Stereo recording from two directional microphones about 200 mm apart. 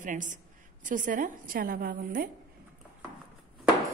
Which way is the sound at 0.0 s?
40° right (ahead or behind).